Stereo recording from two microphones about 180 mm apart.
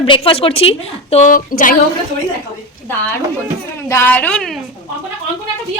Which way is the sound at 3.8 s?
10° left (ahead or behind).